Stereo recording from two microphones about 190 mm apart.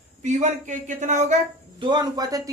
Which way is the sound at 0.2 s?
40° right (ahead or behind).